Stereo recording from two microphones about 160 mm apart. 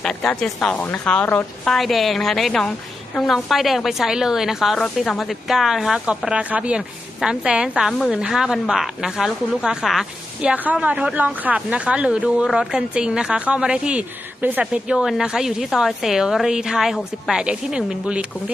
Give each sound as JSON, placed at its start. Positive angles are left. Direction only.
{"t": 0.0, "sound": "a woman's voice", "side_deg": 5}